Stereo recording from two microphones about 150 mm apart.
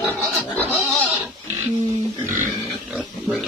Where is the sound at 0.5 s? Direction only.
Centre (ahead or behind).